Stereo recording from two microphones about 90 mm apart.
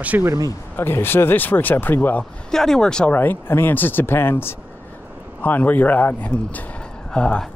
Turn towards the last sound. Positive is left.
turn(degrees=10)  # may be behind; listen again after turning